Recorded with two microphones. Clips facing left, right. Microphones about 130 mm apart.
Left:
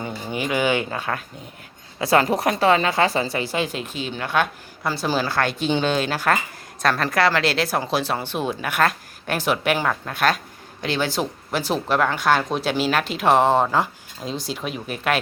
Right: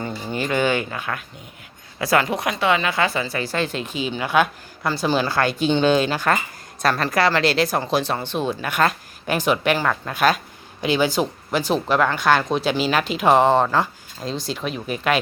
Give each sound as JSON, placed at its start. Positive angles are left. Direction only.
{"t": 0.3, "sound": "speech", "side_deg": 15}
{"t": 0.9, "sound": "a woman's voice", "side_deg": 30}
{"t": 2.2, "sound": "speech", "side_deg": 40}
{"t": 3.3, "sound": "speech", "side_deg": 15}
{"t": 4.8, "sound": "speech", "side_deg": 5}